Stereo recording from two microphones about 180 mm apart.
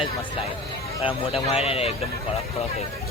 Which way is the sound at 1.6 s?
35° left (ahead or behind).